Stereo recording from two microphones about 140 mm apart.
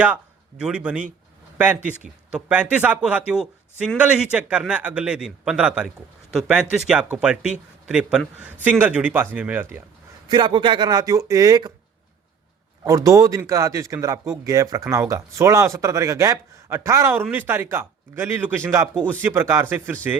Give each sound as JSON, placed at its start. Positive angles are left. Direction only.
{"t": 0.6, "sound": "a man's voice", "side_deg": -10}
{"t": 10.2, "sound": "speech", "side_deg": -35}
{"t": 12.8, "sound": "a man's voice", "side_deg": -25}